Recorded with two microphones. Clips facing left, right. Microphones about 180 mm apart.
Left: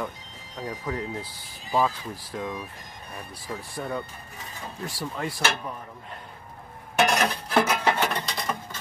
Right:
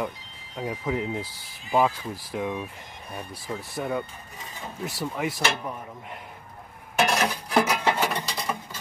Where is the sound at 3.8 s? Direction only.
10° right (ahead or behind).